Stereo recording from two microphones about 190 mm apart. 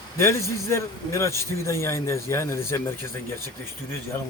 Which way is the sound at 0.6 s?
15° left (ahead or behind).